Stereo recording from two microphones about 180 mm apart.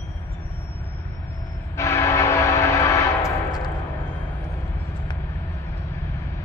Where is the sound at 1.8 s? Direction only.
15° left (ahead or behind).